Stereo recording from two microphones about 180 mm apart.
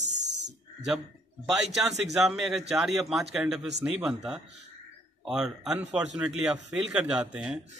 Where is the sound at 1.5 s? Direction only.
Centre (ahead or behind).